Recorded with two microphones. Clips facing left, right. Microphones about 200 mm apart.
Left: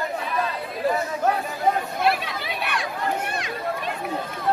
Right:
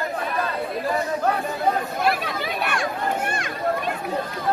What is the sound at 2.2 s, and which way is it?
Chatter, 45° right (ahead or behind).